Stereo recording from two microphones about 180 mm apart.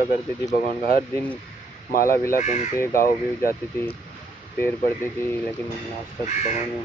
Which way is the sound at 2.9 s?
55° left (ahead or behind).